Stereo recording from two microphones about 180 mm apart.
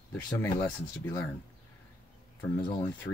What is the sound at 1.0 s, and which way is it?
Speech, 15° left (ahead or behind).